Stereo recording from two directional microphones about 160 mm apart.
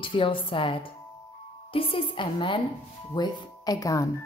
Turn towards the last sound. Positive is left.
turn(degrees=20)  # may be behind; listen again after turning